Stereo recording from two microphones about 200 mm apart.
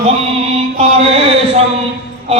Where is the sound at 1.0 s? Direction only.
30° right (ahead or behind).